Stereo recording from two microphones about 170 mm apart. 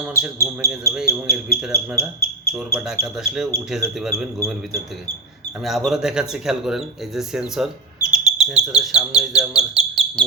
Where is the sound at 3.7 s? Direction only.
Centre (ahead or behind).